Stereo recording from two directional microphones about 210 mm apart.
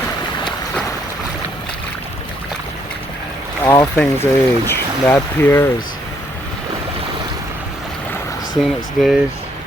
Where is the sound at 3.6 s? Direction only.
10° left (ahead or behind).